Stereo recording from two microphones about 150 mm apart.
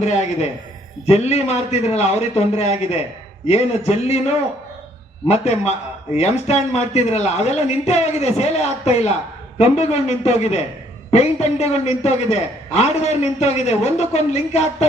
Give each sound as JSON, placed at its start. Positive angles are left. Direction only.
{"t": 0.0, "sound": "a man's voice", "side_deg": 50}